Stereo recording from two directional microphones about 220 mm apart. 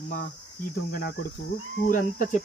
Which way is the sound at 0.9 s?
40° left (ahead or behind).